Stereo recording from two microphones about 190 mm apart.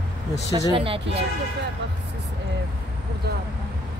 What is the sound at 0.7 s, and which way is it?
Speech, 30° right (ahead or behind).